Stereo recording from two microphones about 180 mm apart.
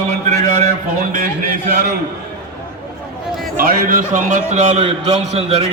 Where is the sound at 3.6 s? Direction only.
55° right (ahead or behind).